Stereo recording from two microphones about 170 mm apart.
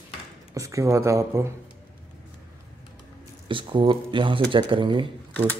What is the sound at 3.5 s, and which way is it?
Speech, 30° right (ahead or behind).